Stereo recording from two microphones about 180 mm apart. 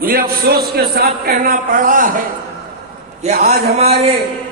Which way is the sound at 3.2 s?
55° right (ahead or behind).